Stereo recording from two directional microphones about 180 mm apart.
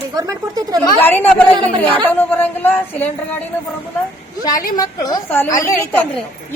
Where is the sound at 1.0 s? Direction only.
10° left (ahead or behind).